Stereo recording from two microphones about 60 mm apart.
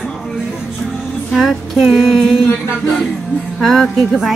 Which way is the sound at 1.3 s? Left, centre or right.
Centre.